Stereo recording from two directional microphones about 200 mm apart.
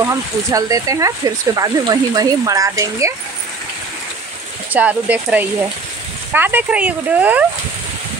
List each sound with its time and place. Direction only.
0.0 s speech: 15° right (ahead or behind)
4.7 s speech: 5° right (ahead or behind)